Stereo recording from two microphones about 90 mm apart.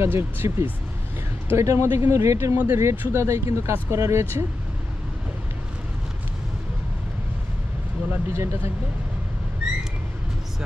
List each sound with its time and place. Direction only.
0.0 s speech: 25° right (ahead or behind)
8.3 s speech: 30° right (ahead or behind)